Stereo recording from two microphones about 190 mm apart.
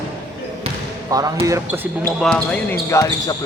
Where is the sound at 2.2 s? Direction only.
5° left (ahead or behind).